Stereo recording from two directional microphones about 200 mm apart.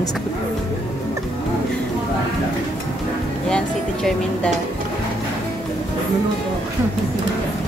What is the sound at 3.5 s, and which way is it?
Speech, 5° left (ahead or behind).